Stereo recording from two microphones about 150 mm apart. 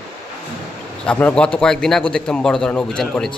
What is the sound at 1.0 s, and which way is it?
A man's voice, 10° left (ahead or behind).